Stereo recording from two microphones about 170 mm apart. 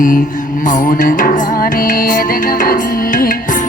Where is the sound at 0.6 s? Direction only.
50° left (ahead or behind).